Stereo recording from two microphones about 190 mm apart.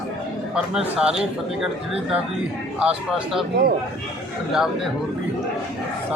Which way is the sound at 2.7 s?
5° right (ahead or behind).